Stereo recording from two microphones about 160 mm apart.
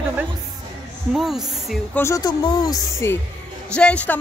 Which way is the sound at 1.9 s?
20° left (ahead or behind).